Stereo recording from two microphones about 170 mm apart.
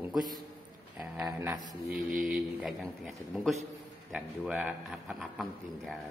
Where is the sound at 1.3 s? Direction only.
20° right (ahead or behind).